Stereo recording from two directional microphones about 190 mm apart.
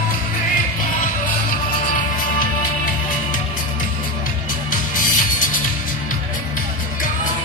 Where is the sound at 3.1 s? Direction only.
45° left (ahead or behind).